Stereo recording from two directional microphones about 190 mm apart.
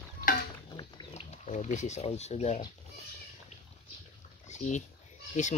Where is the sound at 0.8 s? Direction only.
25° left (ahead or behind).